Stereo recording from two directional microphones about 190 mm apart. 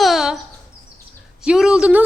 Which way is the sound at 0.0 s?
Centre (ahead or behind).